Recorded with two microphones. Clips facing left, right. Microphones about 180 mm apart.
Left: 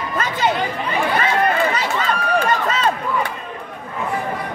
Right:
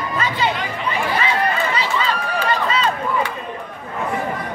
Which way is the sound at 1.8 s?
45° left (ahead or behind).